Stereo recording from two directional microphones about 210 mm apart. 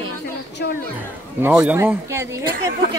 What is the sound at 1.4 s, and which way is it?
Speech, 10° right (ahead or behind).